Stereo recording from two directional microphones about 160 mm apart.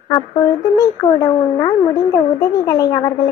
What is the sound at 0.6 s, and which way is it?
A woman's voice, 25° left (ahead or behind).